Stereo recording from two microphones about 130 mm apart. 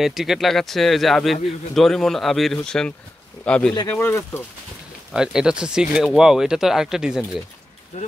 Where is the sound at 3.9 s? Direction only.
20° left (ahead or behind).